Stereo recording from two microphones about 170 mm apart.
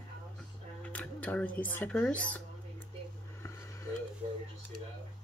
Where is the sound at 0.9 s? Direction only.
10° left (ahead or behind).